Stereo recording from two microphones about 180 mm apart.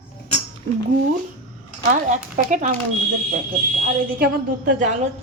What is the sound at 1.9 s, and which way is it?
Speech, 45° right (ahead or behind).